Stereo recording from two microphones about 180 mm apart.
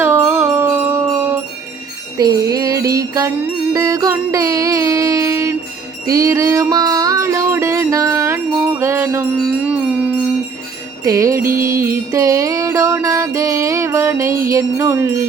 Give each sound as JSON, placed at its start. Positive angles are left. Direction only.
{"t": 0.0, "sound": "music", "side_deg": -15}
{"t": 2.1, "sound": "music", "side_deg": -20}